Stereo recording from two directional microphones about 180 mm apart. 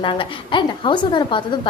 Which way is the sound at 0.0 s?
25° left (ahead or behind).